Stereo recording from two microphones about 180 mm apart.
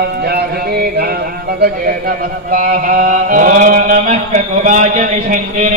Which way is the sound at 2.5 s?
50° right (ahead or behind).